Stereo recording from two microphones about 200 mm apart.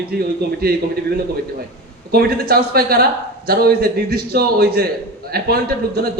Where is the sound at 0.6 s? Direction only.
50° right (ahead or behind).